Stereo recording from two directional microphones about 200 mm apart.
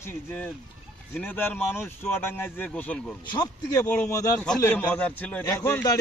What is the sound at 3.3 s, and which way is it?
A man's voice, 15° left (ahead or behind).